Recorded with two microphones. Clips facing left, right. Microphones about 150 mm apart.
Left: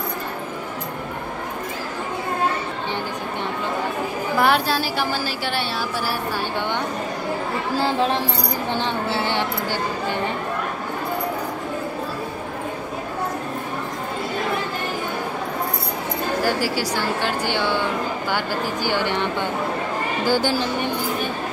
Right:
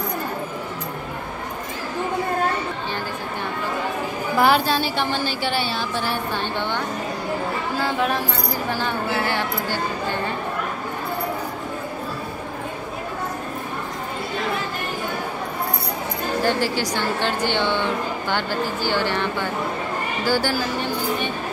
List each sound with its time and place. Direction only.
4.4 s a woman's voice: centre (ahead or behind)
7.8 s speech: 30° left (ahead or behind)
16.4 s speech: 5° left (ahead or behind)
20.2 s speech: 20° left (ahead or behind)